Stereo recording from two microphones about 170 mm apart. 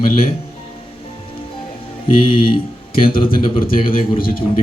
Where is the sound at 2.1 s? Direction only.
30° left (ahead or behind).